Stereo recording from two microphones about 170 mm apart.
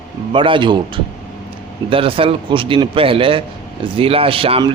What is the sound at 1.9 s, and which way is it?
A man's voice, 30° right (ahead or behind).